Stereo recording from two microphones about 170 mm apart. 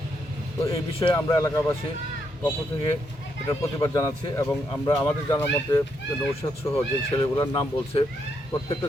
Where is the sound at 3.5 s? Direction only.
20° left (ahead or behind).